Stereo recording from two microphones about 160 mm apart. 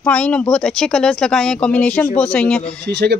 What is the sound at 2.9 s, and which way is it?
Speech, 90° right.